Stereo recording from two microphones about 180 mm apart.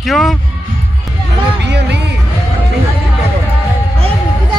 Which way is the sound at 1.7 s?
70° right (ahead or behind).